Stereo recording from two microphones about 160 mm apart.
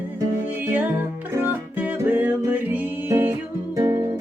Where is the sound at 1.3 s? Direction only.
10° right (ahead or behind).